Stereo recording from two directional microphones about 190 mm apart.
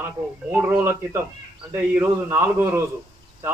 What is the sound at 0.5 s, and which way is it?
A man's voice, 15° right (ahead or behind).